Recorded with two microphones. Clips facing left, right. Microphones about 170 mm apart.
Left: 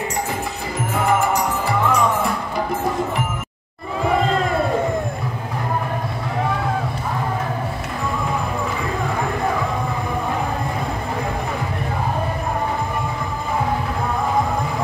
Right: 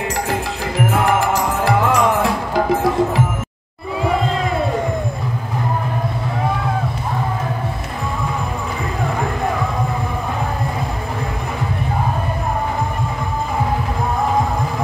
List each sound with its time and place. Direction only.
0.3 s music: 90° right